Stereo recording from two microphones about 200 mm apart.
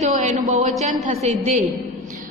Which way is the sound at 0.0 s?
35° right (ahead or behind).